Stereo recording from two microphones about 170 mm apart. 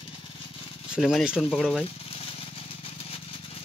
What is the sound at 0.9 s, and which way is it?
Speech, centre (ahead or behind).